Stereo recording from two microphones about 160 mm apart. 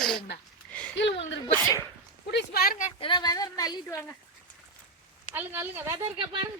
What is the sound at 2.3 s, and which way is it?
Speech, 70° left (ahead or behind).